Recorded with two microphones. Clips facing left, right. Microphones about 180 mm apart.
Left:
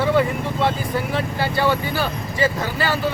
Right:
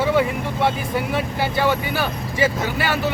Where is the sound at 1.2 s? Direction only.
15° right (ahead or behind).